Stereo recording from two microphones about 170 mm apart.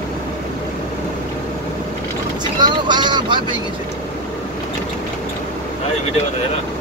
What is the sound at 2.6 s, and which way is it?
Vehicle, 25° right (ahead or behind).